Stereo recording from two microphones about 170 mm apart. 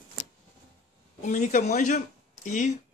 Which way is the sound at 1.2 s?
45° left (ahead or behind).